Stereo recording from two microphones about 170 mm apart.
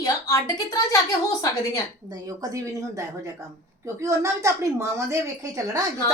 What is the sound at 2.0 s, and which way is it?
Speech, 20° right (ahead or behind).